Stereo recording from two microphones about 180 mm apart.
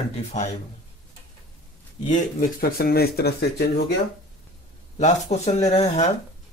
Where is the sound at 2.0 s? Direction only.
45° left (ahead or behind); by 3.7 s 65° left (ahead or behind).